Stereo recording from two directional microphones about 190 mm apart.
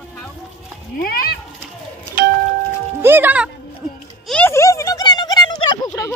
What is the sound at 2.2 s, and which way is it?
Music, 45° right (ahead or behind).